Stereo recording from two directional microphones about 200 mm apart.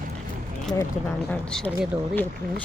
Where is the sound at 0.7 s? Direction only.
15° left (ahead or behind).